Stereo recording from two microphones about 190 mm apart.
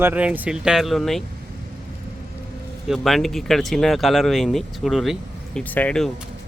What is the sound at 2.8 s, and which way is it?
Speech, centre (ahead or behind).